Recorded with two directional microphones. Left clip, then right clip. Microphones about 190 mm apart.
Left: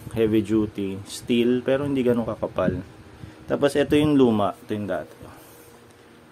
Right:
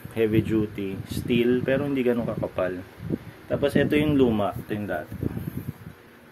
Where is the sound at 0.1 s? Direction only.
15° left (ahead or behind).